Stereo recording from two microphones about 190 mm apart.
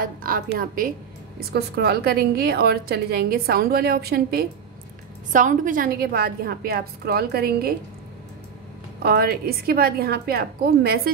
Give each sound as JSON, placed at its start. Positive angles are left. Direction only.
{"t": 0.0, "sound": "a woman's voice", "side_deg": -50}
{"t": 5.3, "sound": "a woman's voice", "side_deg": -45}
{"t": 9.0, "sound": "a woman's voice", "side_deg": -55}